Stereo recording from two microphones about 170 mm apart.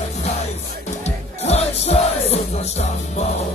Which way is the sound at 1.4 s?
40° left (ahead or behind).